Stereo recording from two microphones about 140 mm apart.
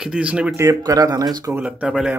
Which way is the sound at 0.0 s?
5° right (ahead or behind).